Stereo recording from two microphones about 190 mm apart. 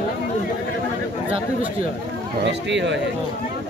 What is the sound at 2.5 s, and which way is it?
Speech, 70° right (ahead or behind).